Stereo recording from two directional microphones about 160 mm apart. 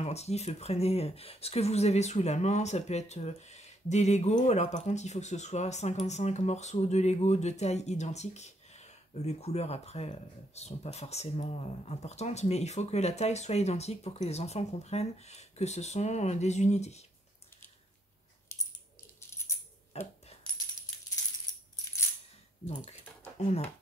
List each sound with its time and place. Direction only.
0.0 s speech: 40° left (ahead or behind)
19.9 s coin: 40° left (ahead or behind)